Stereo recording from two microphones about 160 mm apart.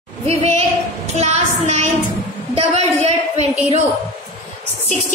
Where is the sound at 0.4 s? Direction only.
40° right (ahead or behind).